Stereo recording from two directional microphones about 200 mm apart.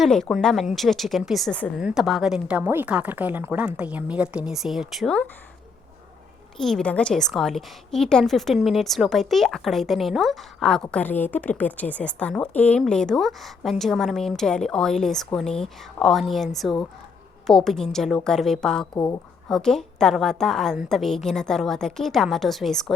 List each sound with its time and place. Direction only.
0.0 s a woman's voice: centre (ahead or behind)
6.6 s a woman's voice: centre (ahead or behind)
18.9 s a woman's voice: 15° left (ahead or behind)
19.5 s a woman's voice: 5° left (ahead or behind)